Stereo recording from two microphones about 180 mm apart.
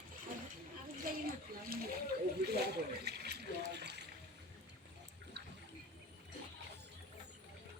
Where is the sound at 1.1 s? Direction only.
50° right (ahead or behind).